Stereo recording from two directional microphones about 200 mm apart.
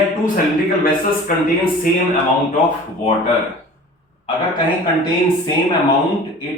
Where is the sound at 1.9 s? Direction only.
45° left (ahead or behind).